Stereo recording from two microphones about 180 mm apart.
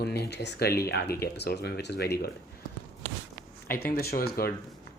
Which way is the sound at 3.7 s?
55° left (ahead or behind).